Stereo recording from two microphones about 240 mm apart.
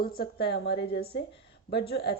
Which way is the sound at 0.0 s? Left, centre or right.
Left.